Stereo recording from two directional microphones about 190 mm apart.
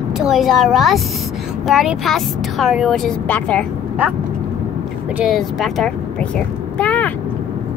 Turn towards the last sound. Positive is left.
turn(degrees=5)  # may be behind; listen again after turning